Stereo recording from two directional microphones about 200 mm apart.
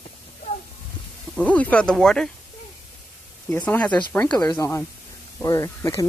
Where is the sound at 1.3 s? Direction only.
5° left (ahead or behind).